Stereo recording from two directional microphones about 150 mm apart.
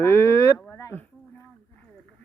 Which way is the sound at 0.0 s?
15° left (ahead or behind).